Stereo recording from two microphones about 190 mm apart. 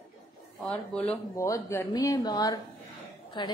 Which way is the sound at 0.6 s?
5° left (ahead or behind).